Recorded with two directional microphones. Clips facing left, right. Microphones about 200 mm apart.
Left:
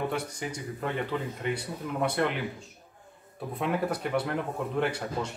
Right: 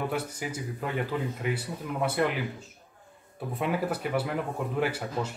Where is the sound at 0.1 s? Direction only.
5° right (ahead or behind).